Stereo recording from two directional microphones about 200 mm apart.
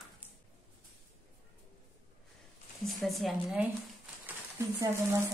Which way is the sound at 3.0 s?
Centre (ahead or behind).